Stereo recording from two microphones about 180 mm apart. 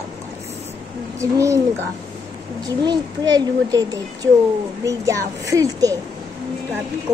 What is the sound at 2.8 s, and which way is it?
A child's voice, 20° right (ahead or behind).